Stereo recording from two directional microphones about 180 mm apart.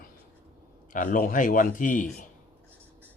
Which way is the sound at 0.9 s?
50° left (ahead or behind).